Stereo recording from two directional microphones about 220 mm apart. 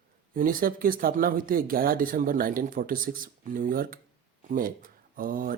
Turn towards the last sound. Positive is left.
turn(degrees=-40)  # may be behind; listen again after turning